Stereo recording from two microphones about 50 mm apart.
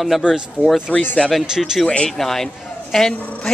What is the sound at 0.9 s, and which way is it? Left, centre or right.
Speech, left.